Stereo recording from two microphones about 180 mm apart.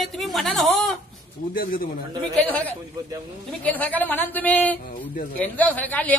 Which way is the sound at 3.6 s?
10° left (ahead or behind).